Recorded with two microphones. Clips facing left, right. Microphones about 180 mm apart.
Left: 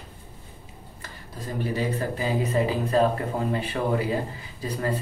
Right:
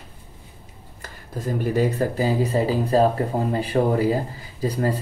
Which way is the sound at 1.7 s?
35° right (ahead or behind).